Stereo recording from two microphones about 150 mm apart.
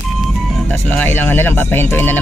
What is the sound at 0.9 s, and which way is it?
Speech, 10° left (ahead or behind).